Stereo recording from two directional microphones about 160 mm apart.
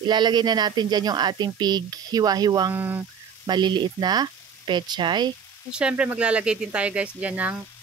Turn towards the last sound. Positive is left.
turn(degrees=-10)  # may be behind; listen again after turning